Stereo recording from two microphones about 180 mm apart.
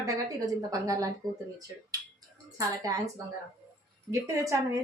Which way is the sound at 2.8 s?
20° right (ahead or behind).